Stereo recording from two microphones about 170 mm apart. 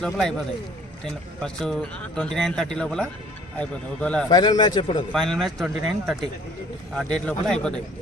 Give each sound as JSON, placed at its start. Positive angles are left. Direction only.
{"t": 0.0, "sound": "speech", "side_deg": 5}
{"t": 4.3, "sound": "a man's voice", "side_deg": 25}
{"t": 5.1, "sound": "speech", "side_deg": 5}